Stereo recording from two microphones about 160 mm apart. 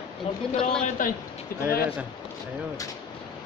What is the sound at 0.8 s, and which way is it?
Speech, 55° left (ahead or behind).